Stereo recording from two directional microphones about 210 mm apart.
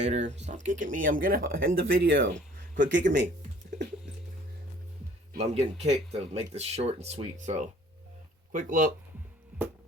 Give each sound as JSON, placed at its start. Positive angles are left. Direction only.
{"t": 0.0, "sound": "speech", "side_deg": -35}
{"t": 5.4, "sound": "speech", "side_deg": -30}